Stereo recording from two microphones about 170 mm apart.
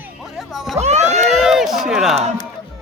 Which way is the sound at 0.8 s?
40° right (ahead or behind).